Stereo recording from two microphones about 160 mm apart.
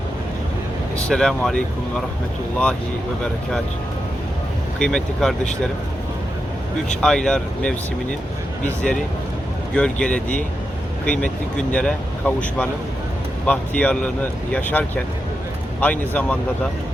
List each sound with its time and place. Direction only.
1.0 s speech: 5° left (ahead or behind)
4.8 s speech: 5° left (ahead or behind)
7.0 s speech: 5° left (ahead or behind)